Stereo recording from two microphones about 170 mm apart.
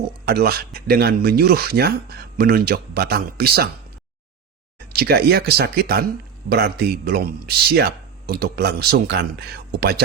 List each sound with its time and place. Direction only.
0.3 s speech: 65° right (ahead or behind)
4.9 s speech: 65° right (ahead or behind)